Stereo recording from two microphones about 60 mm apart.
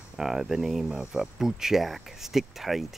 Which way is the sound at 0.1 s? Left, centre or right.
Centre.